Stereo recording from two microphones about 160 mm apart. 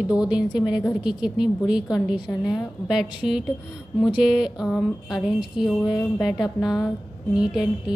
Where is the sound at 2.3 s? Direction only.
15° left (ahead or behind).